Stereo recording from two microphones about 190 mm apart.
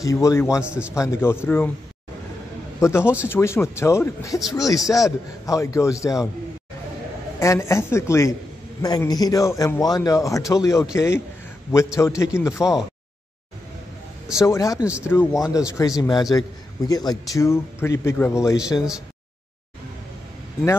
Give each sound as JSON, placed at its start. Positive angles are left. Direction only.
{"t": 0.0, "sound": "a man's voice", "side_deg": 15}
{"t": 0.6, "sound": "a man's voice", "side_deg": -5}
{"t": 0.9, "sound": "a man's voice", "side_deg": 15}
{"t": 2.8, "sound": "a man's voice", "side_deg": 15}
{"t": 4.4, "sound": "a man's voice", "side_deg": 0}
{"t": 4.6, "sound": "a man's voice", "side_deg": 20}
{"t": 7.3, "sound": "a man's voice", "side_deg": 15}
{"t": 14.2, "sound": "a man's voice", "side_deg": 15}